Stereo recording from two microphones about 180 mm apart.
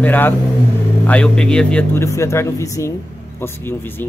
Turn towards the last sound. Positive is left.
turn(degrees=10)  # may be behind; listen again after turning